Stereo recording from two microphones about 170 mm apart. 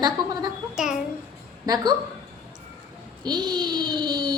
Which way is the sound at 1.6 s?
20° right (ahead or behind).